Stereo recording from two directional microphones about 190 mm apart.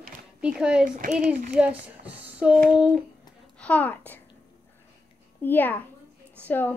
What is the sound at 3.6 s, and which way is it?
Speech, 10° left (ahead or behind).